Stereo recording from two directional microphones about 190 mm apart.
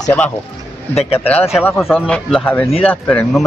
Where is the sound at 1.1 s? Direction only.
10° left (ahead or behind).